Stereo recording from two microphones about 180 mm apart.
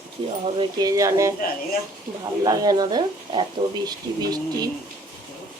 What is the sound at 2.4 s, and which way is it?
Speech, 20° right (ahead or behind).